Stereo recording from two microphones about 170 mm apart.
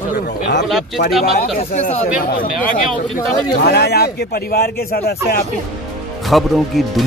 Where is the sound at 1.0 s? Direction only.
90° left.